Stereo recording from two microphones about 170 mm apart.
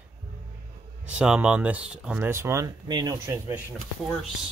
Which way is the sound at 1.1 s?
5° right (ahead or behind).